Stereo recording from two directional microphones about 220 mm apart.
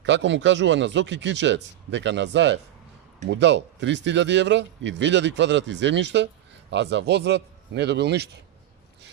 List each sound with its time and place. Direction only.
0.0 s speech: 55° right (ahead or behind)